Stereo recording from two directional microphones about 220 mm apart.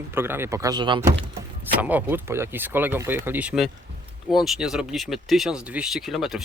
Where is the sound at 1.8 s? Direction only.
5° right (ahead or behind).